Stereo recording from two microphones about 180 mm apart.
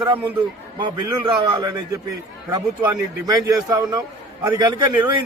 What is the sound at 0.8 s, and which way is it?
A man's voice, 25° right (ahead or behind).